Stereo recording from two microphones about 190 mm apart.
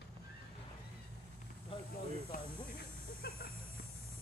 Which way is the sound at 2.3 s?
45° left (ahead or behind).